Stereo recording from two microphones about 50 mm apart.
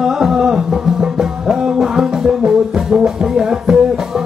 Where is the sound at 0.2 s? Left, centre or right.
Centre.